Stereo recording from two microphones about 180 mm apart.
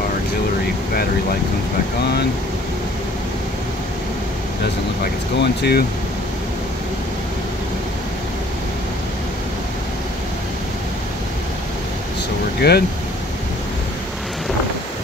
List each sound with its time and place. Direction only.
5.4 s speech: 65° left (ahead or behind)
12.6 s speech: 60° left (ahead or behind)